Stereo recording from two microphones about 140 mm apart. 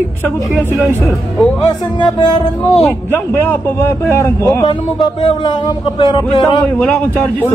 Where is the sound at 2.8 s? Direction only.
15° left (ahead or behind).